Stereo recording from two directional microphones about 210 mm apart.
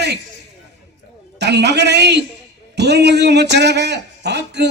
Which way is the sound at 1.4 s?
55° right (ahead or behind).